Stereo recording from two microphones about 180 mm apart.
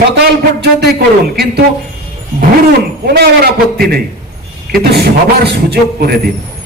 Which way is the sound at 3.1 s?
60° right (ahead or behind).